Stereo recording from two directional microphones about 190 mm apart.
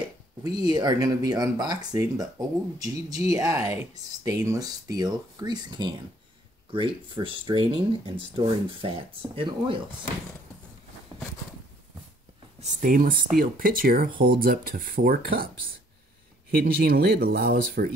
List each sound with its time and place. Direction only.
0.6 s speech: 20° right (ahead or behind)
12.5 s speech: 40° right (ahead or behind)
16.5 s speech: 50° right (ahead or behind)